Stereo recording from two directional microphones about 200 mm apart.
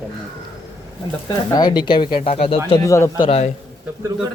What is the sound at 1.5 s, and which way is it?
Speech, 20° left (ahead or behind).